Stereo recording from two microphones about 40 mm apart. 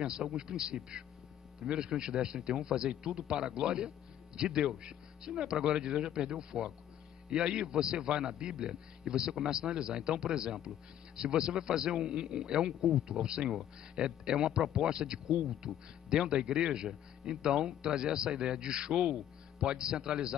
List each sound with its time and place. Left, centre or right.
0.0 s a man's voice: centre